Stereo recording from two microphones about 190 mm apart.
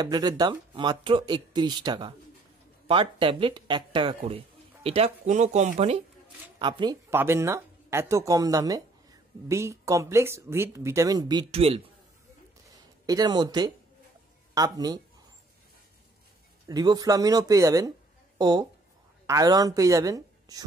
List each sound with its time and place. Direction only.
0.0 s speech: 20° right (ahead or behind)
7.1 s speech: 15° right (ahead or behind); by 11.8 s 30° right (ahead or behind)
13.0 s speech: 20° right (ahead or behind)
16.6 s speech: 20° right (ahead or behind)